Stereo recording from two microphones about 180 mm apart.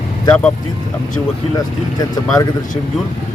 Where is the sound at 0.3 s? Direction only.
5° left (ahead or behind).